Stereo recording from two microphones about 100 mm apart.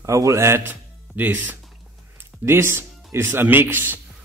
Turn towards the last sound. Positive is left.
turn(degrees=-20)  # may be behind; listen again after turning